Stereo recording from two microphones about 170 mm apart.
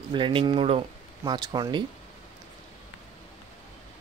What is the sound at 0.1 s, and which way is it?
Speech, 30° right (ahead or behind).